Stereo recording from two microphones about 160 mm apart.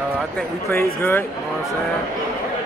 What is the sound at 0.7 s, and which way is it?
Speech, 15° left (ahead or behind).